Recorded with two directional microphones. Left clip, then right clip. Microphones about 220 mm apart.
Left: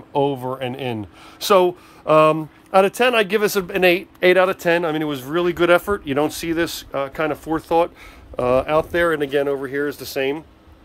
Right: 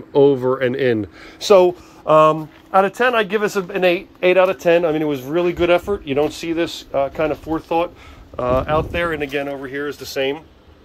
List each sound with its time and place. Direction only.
0.1 s speech: centre (ahead or behind)
1.4 s speech: 15° left (ahead or behind)
4.6 s speech: 10° left (ahead or behind)
5.7 s speech: 25° left (ahead or behind)
6.9 s speech: 15° left (ahead or behind)
7.4 s speech: 30° left (ahead or behind)